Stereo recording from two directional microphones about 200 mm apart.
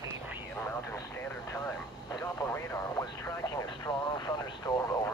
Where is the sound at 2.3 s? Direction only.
10° left (ahead or behind).